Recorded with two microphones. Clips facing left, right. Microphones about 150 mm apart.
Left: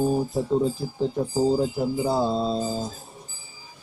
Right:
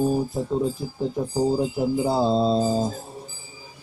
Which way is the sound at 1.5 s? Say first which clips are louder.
Right 1 dB; 15° right (ahead or behind).